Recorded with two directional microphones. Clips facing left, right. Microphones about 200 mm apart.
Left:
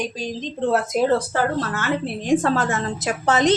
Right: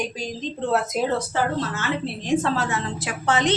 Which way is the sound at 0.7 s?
50° left (ahead or behind).